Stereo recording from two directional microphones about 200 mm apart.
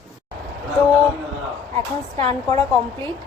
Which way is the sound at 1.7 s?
30° right (ahead or behind).